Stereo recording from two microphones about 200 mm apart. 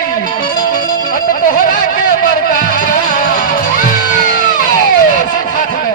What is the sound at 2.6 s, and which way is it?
Music, 45° left (ahead or behind).